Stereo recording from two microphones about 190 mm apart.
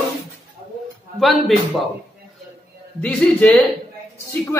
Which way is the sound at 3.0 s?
5° left (ahead or behind).